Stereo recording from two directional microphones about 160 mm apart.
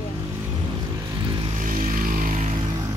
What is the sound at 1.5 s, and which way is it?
Vehicle, 55° right (ahead or behind).